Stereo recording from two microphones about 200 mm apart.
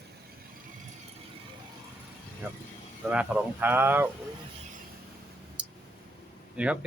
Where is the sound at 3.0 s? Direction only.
5° right (ahead or behind).